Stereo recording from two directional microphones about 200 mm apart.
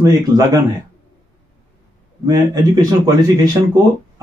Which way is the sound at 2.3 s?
20° right (ahead or behind).